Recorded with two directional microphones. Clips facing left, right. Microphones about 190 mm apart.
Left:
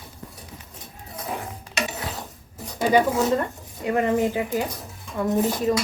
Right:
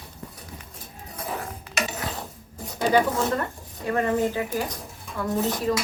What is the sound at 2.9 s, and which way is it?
Speech, 10° left (ahead or behind).